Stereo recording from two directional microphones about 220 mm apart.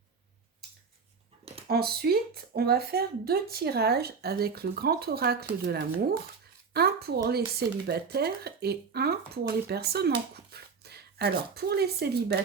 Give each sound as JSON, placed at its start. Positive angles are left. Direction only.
{"t": 1.6, "sound": "a woman's voice", "side_deg": -45}